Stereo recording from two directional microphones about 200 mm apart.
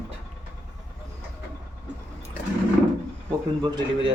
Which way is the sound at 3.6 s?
20° right (ahead or behind).